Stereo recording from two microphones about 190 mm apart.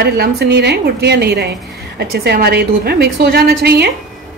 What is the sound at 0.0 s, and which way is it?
A woman's voice, 60° right (ahead or behind).